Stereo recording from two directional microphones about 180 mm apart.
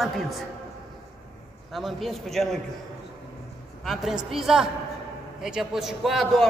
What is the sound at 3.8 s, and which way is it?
A man's voice, centre (ahead or behind).